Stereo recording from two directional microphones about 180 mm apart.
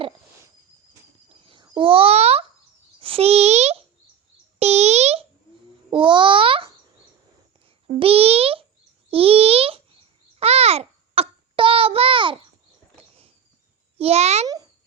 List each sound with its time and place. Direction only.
1.5 s babbling: 25° right (ahead or behind)
3.0 s a child's voice: 30° right (ahead or behind)
4.6 s a sound: 35° right (ahead or behind)
5.9 s babbling: 25° right (ahead or behind)
7.9 s a child's voice: 30° right (ahead or behind)
10.4 s babbling: 35° right (ahead or behind)
13.0 s a sound: 35° right (ahead or behind)
14.0 s a child's voice: 35° right (ahead or behind)
14.4 s a child's voice: 20° right (ahead or behind)